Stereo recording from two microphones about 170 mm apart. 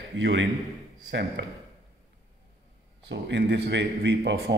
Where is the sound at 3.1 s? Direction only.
90° right.